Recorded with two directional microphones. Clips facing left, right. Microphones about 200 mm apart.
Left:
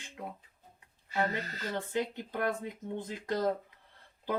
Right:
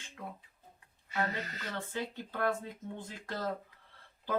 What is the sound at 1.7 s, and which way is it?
Speech, 15° left (ahead or behind).